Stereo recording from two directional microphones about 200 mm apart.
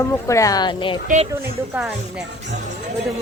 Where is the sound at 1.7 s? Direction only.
5° right (ahead or behind).